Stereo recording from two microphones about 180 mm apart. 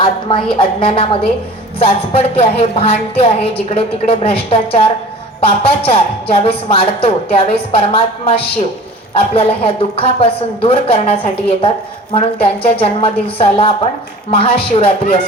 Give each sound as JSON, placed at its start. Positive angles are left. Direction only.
{"t": 0.0, "sound": "a woman's voice", "side_deg": 30}